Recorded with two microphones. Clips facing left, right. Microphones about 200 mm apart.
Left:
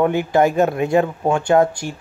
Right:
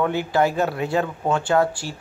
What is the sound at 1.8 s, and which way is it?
Speech, 55° left (ahead or behind).